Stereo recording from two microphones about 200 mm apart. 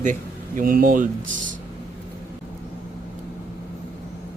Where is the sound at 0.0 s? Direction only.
40° right (ahead or behind).